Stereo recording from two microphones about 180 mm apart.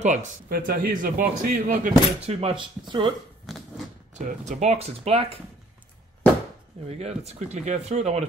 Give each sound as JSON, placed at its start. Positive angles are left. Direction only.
{"t": 0.0, "sound": "speech", "side_deg": -40}
{"t": 0.5, "sound": "speech", "side_deg": -55}
{"t": 2.2, "sound": "speech", "side_deg": -30}
{"t": 3.4, "sound": "a sound", "side_deg": 0}
{"t": 4.1, "sound": "speech", "side_deg": -40}
{"t": 6.9, "sound": "speech", "side_deg": -35}